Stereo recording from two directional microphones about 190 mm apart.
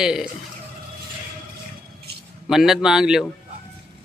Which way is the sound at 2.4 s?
Centre (ahead or behind).